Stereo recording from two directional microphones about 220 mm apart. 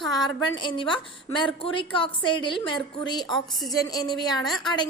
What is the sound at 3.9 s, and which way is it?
Speech, 20° left (ahead or behind).